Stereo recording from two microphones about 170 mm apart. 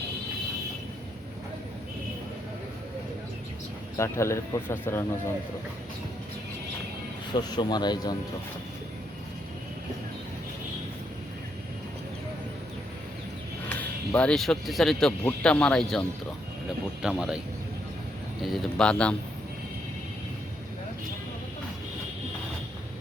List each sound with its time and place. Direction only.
3.9 s speech: 15° left (ahead or behind)
7.3 s speech: 25° left (ahead or behind)
13.7 s speech: 10° left (ahead or behind)
18.4 s speech: centre (ahead or behind)